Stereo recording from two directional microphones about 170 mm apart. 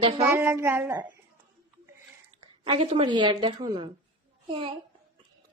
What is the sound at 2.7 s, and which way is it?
A child's voice, 30° right (ahead or behind).